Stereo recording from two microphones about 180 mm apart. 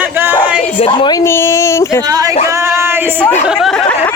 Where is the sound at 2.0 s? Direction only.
20° right (ahead or behind).